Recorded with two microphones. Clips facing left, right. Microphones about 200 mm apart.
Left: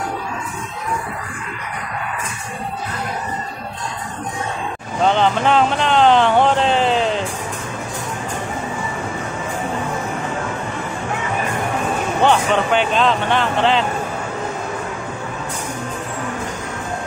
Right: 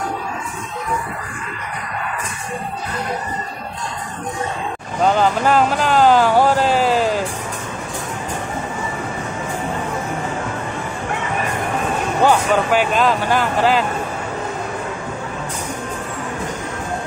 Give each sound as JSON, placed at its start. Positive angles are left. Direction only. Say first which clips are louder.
{"t": 5.0, "sound": "speech", "louder": "even", "side_deg": -5}
{"t": 12.2, "sound": "speech", "louder": "right 1 dB", "side_deg": -5}